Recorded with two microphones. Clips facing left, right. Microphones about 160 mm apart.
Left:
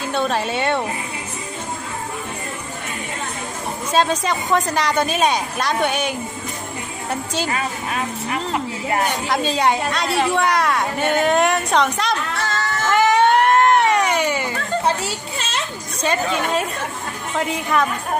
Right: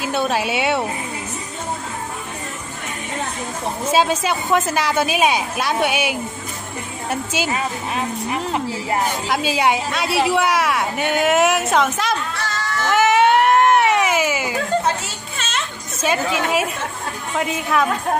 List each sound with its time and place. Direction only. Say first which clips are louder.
0.1 s a woman's voice: even; 5° right (ahead or behind)
3.9 s a woman's voice: even; 5° right (ahead or behind)
9.3 s a woman's voice: even; 5° right (ahead or behind)
12.4 s a sound: left 2 dB; 50° left (ahead or behind)
12.9 s baby cry: even; 5° right (ahead or behind)
14.8 s a child's voice: left 2 dB; 35° left (ahead or behind)
16.0 s a woman's voice: right 1 dB; 5° right (ahead or behind)